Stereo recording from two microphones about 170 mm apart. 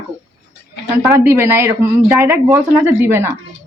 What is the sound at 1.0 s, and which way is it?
Speech, 15° right (ahead or behind).